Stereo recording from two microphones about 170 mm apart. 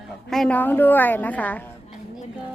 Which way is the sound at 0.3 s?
5° left (ahead or behind).